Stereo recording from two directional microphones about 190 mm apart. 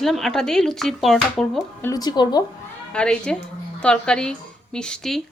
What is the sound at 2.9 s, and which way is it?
A woman's voice, 5° left (ahead or behind).